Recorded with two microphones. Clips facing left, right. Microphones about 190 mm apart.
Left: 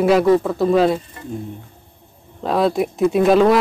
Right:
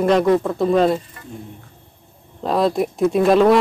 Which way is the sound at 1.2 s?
25° left (ahead or behind).